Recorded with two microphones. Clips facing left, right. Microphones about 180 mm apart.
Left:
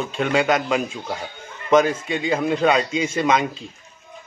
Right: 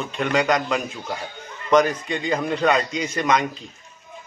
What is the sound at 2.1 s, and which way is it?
Speech, 5° left (ahead or behind).